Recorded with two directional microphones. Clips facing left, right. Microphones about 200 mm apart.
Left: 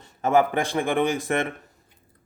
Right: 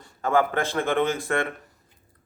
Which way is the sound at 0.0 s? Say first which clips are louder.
Left 2 dB; 20° left (ahead or behind).